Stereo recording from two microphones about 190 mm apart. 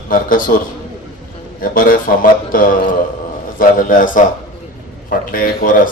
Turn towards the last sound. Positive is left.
turn(degrees=50)  # may be behind; listen again after turning